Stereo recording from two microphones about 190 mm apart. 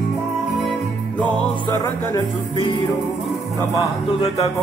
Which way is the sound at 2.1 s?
25° left (ahead or behind).